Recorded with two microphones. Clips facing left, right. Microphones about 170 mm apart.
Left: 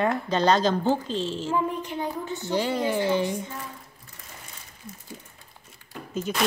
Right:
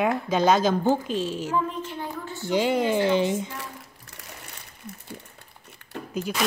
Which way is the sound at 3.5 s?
80° right.